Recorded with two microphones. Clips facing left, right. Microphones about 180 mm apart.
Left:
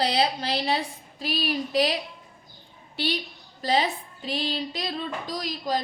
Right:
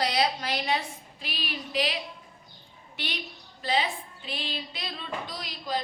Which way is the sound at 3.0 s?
30° left (ahead or behind).